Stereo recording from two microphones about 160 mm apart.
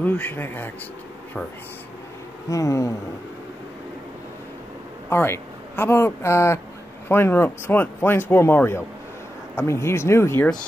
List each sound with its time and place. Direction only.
0.0 s speech: 10° left (ahead or behind)
2.5 s a sound: 20° left (ahead or behind)
5.1 s speech: 15° left (ahead or behind)